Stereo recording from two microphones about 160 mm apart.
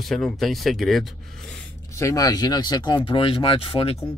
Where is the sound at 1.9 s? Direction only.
20° left (ahead or behind).